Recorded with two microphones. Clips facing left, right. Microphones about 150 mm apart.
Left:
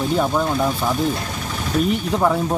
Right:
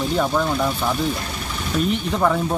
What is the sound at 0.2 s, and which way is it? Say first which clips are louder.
Speech: right 1 dB; 10° left (ahead or behind).